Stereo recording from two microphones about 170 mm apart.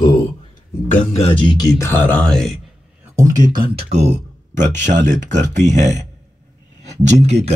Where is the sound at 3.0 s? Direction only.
15° right (ahead or behind).